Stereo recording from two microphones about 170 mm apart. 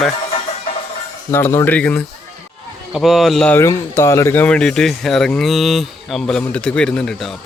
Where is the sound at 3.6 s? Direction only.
15° left (ahead or behind).